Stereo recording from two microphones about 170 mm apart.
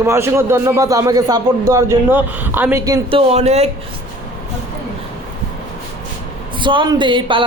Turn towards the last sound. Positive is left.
turn(degrees=-30)  # may be behind; listen again after turning